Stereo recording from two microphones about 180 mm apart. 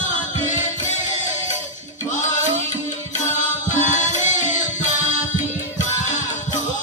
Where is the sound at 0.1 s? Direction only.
45° left (ahead or behind).